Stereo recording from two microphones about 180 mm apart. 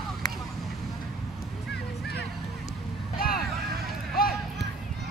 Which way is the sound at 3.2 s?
55° left (ahead or behind).